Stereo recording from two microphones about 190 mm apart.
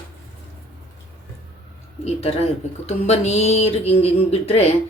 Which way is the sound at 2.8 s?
35° left (ahead or behind).